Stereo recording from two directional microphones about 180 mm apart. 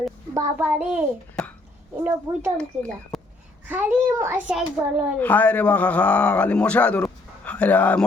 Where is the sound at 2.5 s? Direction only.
5° left (ahead or behind).